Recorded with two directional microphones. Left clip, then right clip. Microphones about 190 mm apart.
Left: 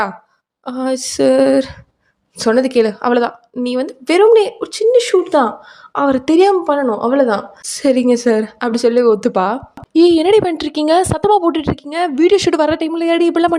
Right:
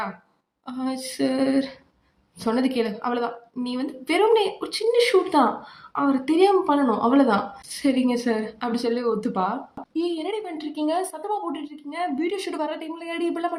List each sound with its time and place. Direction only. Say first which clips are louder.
0.6 s a woman's voice: left 11 dB; 45° left (ahead or behind)